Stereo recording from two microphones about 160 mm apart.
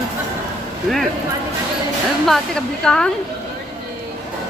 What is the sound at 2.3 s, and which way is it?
Speech, 5° left (ahead or behind).